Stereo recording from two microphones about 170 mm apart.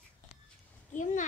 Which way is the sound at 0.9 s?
45° left (ahead or behind).